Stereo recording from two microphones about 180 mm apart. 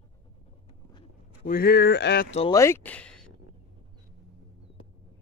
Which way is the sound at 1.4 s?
60° left (ahead or behind).